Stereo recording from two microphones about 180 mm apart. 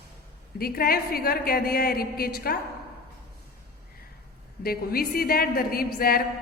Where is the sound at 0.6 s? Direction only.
55° left (ahead or behind).